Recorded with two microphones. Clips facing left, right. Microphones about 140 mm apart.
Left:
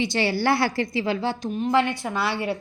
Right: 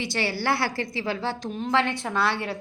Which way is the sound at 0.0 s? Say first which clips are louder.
Left 5 dB; 20° left (ahead or behind).